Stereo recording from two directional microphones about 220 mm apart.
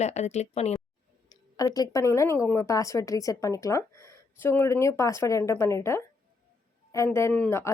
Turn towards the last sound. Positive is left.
turn(degrees=10)  # may be behind; listen again after turning